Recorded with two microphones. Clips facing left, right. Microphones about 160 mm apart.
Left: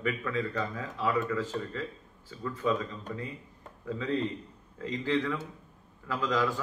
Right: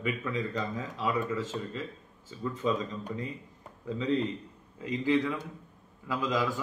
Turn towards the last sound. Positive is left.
turn(degrees=-15)  # may be behind; listen again after turning